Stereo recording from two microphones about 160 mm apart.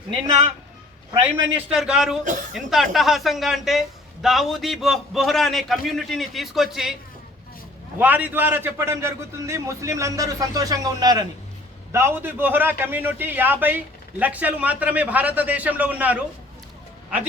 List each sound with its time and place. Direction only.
1.2 s a woman's voice: 5° right (ahead or behind)
7.9 s a man's voice: 10° right (ahead or behind)